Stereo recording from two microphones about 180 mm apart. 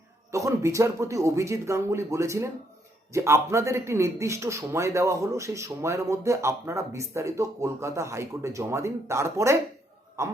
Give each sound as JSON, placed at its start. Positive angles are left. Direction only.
{"t": 0.3, "sound": "a man's voice", "side_deg": -15}